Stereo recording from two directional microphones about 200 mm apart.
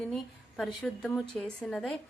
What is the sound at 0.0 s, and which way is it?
A woman's voice, centre (ahead or behind).